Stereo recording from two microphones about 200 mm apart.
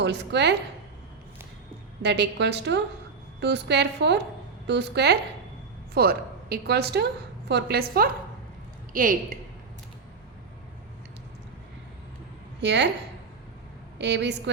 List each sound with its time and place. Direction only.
0.0 s a woman's voice: 60° right (ahead or behind)
2.0 s a woman's voice: 55° right (ahead or behind)
12.5 s a woman's voice: 60° right (ahead or behind)
14.0 s a woman's voice: 60° right (ahead or behind)